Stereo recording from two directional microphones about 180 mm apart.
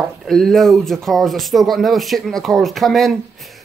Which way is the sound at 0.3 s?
Centre (ahead or behind).